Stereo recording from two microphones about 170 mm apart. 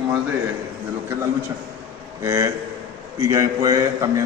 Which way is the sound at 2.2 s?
15° right (ahead or behind).